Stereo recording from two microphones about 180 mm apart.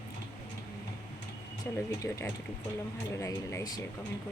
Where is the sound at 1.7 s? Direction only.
10° left (ahead or behind).